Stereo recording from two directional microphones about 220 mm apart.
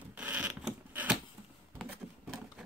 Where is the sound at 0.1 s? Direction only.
5° right (ahead or behind).